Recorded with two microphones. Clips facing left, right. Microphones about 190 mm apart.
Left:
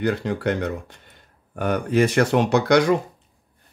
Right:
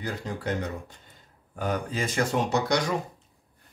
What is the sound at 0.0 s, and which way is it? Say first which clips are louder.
Speech: left 10 dB; 70° left (ahead or behind).